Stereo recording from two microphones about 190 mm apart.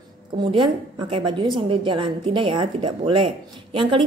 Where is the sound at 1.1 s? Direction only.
25° right (ahead or behind).